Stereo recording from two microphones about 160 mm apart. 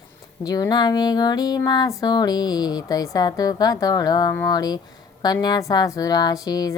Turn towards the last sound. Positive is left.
turn(degrees=25)  # may be behind; listen again after turning